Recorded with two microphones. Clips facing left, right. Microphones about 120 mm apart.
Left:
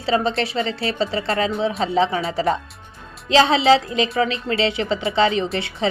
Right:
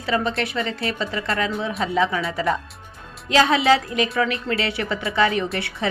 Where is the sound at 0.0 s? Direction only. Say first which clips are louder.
Left 3 dB; 30° left (ahead or behind).